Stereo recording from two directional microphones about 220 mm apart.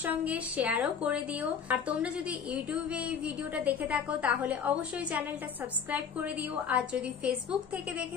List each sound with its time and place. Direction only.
0.0 s a woman's voice: 5° right (ahead or behind)